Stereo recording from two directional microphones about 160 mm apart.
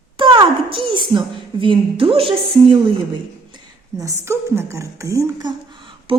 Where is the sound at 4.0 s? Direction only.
20° right (ahead or behind).